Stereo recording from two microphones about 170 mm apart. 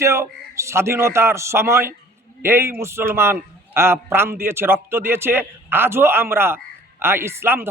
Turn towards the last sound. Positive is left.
turn(degrees=-15)  # may be behind; listen again after turning